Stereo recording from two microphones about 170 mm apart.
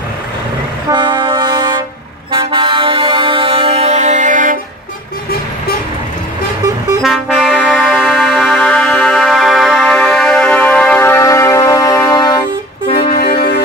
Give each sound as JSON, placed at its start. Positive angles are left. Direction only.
{"t": 0.8, "sound": "train", "side_deg": -25}
{"t": 2.3, "sound": "music", "side_deg": -30}
{"t": 7.0, "sound": "music", "side_deg": 0}
{"t": 13.1, "sound": "music", "side_deg": 65}